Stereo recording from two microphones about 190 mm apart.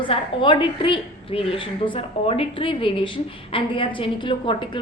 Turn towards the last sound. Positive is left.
turn(degrees=25)  # may be behind; listen again after turning